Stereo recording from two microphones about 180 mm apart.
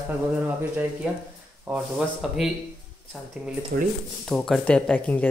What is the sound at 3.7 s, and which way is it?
Speech, 60° right (ahead or behind).